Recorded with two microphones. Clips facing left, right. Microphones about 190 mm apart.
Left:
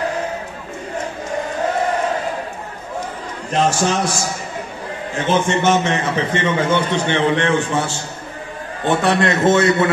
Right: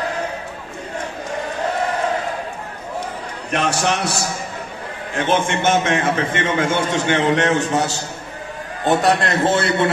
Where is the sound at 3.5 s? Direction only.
65° right (ahead or behind).